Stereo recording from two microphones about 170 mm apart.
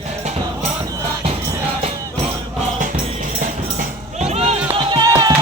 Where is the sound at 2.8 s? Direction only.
50° right (ahead or behind).